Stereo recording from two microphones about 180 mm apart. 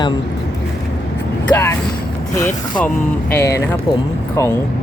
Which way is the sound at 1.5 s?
10° left (ahead or behind).